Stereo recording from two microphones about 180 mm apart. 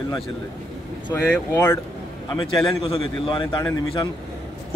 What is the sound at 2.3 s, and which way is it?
A man's voice, 25° left (ahead or behind).